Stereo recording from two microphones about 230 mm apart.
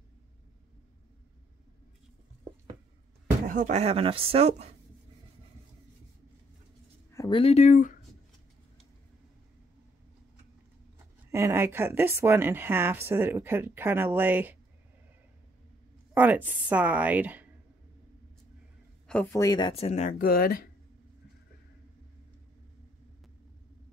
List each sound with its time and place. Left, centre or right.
3.4 s speech: right
7.1 s speech: centre; by 7.9 s left
11.3 s speech: centre
16.2 s speech: centre
19.0 s speech: centre; by 20.6 s left